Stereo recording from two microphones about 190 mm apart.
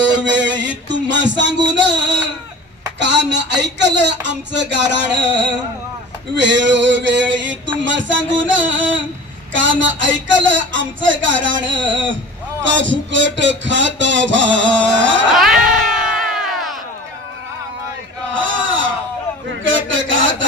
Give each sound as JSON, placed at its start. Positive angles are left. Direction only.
{"t": 0.2, "sound": "music", "side_deg": -70}
{"t": 6.3, "sound": "music", "side_deg": -70}
{"t": 9.5, "sound": "speech", "side_deg": -80}
{"t": 12.7, "sound": "music", "side_deg": -75}
{"t": 15.3, "sound": "a sound", "side_deg": 0}
{"t": 18.3, "sound": "a sound", "side_deg": -90}